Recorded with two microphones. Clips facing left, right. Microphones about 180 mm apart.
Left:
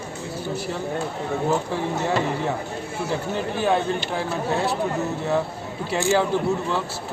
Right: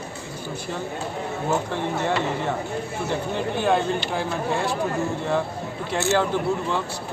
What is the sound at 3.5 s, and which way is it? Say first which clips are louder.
Speech: even; centre (ahead or behind).